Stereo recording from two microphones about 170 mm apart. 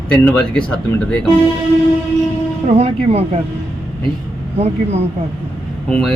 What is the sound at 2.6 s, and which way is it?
Speech, 40° right (ahead or behind).